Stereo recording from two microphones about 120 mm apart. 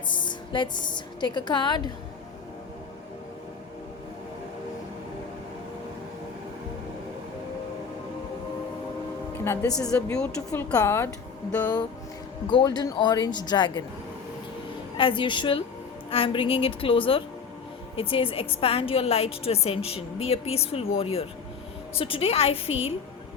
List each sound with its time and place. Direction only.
0.1 s a woman's voice: 40° left (ahead or behind)
9.4 s speech: 20° left (ahead or behind)
9.7 s speech: 5° left (ahead or behind)
10.8 s a woman's voice: 20° left (ahead or behind)
12.5 s speech: 40° left (ahead or behind)
14.9 s a woman's voice: 45° left (ahead or behind)